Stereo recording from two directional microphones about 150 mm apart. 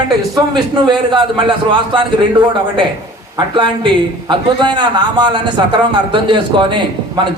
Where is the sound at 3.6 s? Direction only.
35° right (ahead or behind).